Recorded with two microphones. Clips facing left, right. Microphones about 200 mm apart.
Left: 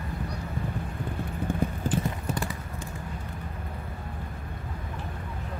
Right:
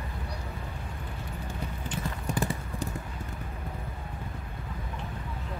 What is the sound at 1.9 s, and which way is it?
Clip-clop, 45° left (ahead or behind).